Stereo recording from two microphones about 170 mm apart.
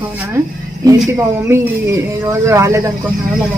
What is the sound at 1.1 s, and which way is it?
Speech, 15° right (ahead or behind).